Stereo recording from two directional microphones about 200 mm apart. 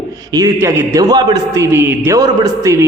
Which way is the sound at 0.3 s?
15° right (ahead or behind).